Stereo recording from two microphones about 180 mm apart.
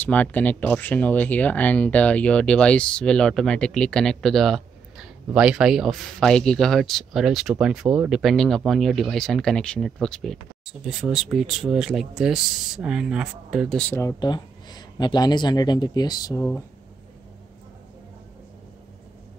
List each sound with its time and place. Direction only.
0.0 s speech: 10° left (ahead or behind)
13.9 s speech: 20° left (ahead or behind)